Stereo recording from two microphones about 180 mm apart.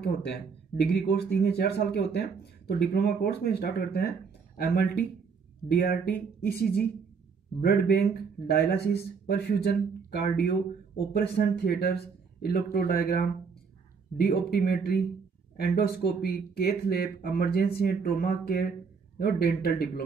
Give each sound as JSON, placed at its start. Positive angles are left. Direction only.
{"t": 0.7, "sound": "speech", "side_deg": 65}
{"t": 14.1, "sound": "speech", "side_deg": 60}